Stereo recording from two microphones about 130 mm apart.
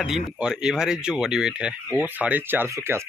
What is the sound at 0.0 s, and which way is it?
Speech, 5° right (ahead or behind).